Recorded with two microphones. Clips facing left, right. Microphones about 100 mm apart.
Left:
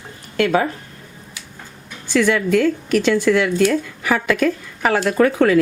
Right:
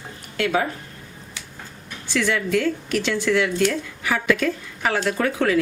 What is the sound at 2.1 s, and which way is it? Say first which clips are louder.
Speech: left 6 dB; 50° left (ahead or behind).